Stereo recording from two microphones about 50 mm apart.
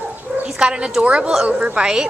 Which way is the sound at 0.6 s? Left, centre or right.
Centre.